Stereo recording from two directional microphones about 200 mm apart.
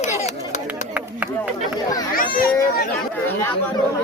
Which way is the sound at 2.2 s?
45° left (ahead or behind).